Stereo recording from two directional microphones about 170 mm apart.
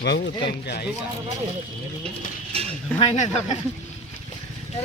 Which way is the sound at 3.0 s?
40° left (ahead or behind).